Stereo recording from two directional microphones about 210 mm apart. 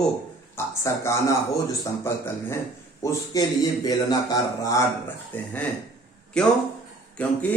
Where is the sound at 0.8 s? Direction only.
15° left (ahead or behind).